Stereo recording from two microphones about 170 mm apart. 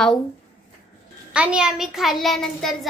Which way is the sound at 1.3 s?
5° right (ahead or behind).